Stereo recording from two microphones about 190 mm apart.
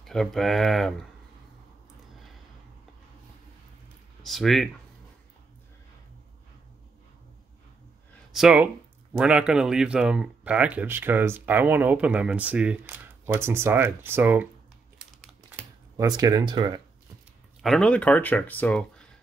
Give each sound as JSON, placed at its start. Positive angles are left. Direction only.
{"t": 0.0, "sound": "speech", "side_deg": 0}
{"t": 4.2, "sound": "speech", "side_deg": 0}
{"t": 8.3, "sound": "speech", "side_deg": -5}
{"t": 15.5, "sound": "speech", "side_deg": -20}
{"t": 17.6, "sound": "speech", "side_deg": 0}